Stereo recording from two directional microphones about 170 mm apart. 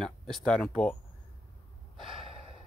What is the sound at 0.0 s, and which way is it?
Speech, centre (ahead or behind).